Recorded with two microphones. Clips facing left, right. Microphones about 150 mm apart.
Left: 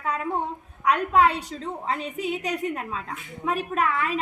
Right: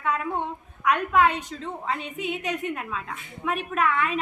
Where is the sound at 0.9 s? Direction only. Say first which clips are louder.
Left 1 dB; 35° left (ahead or behind).